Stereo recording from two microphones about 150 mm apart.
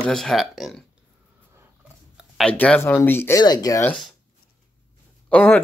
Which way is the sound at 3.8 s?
5° left (ahead or behind).